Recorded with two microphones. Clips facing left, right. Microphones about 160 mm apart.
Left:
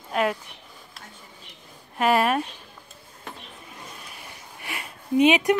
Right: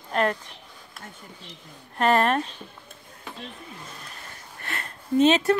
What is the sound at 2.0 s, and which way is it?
Speech, 10° left (ahead or behind).